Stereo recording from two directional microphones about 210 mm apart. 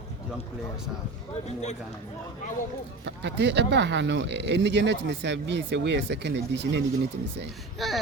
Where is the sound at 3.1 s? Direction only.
55° right (ahead or behind).